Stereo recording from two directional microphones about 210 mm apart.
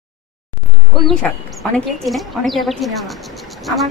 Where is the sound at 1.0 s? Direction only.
Centre (ahead or behind).